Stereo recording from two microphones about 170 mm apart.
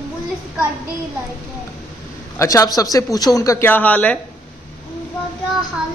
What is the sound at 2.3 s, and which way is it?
A man's voice, 20° left (ahead or behind).